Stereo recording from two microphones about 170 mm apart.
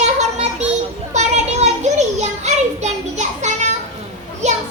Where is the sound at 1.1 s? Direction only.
45° right (ahead or behind).